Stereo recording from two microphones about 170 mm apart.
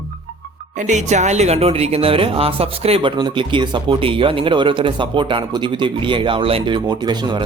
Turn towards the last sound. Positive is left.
turn(degrees=-25)  # may be behind; listen again after turning